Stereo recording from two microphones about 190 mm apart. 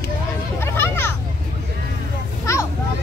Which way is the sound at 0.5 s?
10° left (ahead or behind).